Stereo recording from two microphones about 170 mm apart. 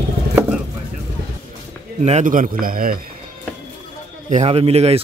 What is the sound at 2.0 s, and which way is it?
A man's voice, 45° right (ahead or behind).